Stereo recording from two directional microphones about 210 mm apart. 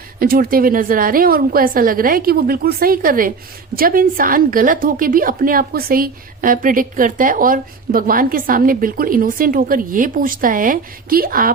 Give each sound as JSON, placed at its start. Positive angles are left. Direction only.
{"t": 0.2, "sound": "a woman's voice", "side_deg": -45}